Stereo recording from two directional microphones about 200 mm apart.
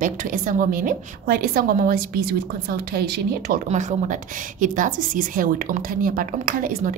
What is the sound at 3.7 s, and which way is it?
A woman's voice, 35° right (ahead or behind).